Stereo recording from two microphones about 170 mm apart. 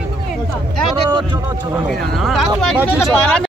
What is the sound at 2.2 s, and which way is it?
Speech, centre (ahead or behind).